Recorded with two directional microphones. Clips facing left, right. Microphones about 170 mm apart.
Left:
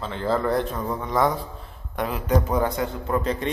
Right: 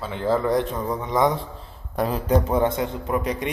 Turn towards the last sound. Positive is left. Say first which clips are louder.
# even
turn(degrees=-15)  # may be behind; listen again after turning